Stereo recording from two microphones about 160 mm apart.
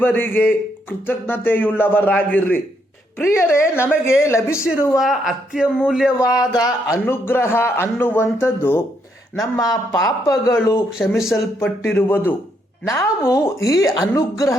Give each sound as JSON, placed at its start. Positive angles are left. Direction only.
{"t": 0.0, "sound": "a man's voice", "side_deg": 10}
{"t": 4.9, "sound": "a man's voice", "side_deg": 0}
{"t": 6.1, "sound": "a woman's voice", "side_deg": 20}